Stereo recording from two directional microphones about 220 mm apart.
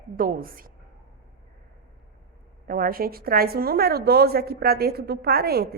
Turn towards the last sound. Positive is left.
turn(degrees=-45)  # may be behind; listen again after turning